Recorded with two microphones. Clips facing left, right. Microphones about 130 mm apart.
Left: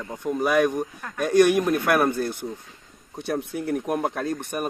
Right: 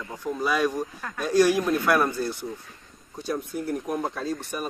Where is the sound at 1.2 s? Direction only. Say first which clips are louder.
Left 3 dB; 55° left (ahead or behind).